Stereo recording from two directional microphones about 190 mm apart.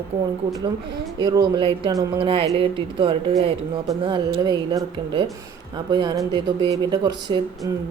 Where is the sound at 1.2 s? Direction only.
20° right (ahead or behind).